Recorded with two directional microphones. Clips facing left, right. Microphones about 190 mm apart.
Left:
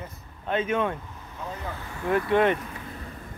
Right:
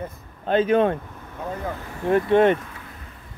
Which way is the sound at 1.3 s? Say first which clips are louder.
Right 6 dB; 50° right (ahead or behind).